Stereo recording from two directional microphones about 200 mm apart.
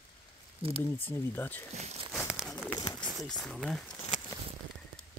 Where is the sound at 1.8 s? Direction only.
30° right (ahead or behind).